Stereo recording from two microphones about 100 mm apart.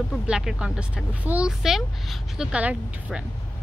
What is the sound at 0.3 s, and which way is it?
Speech, 5° right (ahead or behind).